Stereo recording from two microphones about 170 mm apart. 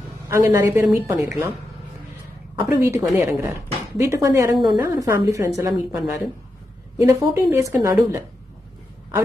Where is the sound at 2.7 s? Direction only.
15° right (ahead or behind).